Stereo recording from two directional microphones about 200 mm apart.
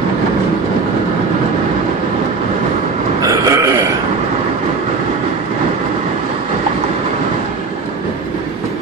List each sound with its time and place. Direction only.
3.2 s burping: 15° right (ahead or behind)